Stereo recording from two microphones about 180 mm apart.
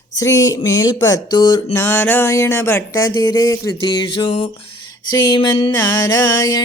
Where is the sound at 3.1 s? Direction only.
20° left (ahead or behind).